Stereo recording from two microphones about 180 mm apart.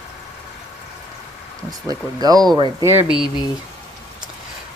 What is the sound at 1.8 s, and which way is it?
Speech, 20° right (ahead or behind).